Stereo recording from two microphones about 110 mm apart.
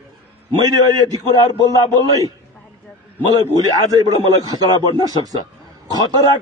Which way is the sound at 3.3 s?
35° right (ahead or behind).